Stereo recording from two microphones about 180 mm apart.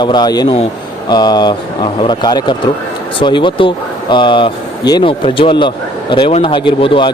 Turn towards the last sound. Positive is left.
turn(degrees=30)  # may be behind; listen again after turning